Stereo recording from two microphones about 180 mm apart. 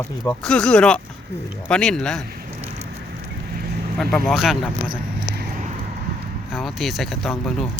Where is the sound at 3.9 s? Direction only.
Centre (ahead or behind).